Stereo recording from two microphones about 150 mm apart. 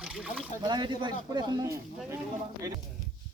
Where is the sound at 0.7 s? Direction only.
30° right (ahead or behind).